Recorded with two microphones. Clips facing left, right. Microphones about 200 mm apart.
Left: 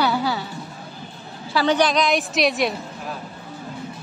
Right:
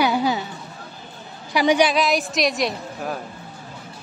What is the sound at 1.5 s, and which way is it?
A woman's voice, 15° right (ahead or behind).